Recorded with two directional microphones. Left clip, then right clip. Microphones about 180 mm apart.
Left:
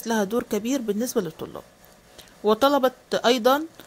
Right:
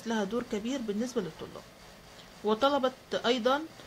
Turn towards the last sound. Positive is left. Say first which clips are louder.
# left 8 dB
turn(degrees=50)  # may be behind; listen again after turning